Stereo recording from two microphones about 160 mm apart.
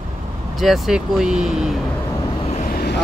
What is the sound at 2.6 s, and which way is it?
Vehicle, 80° left.